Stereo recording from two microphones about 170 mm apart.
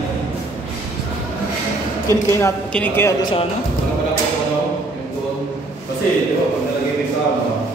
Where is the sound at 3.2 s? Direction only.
25° left (ahead or behind).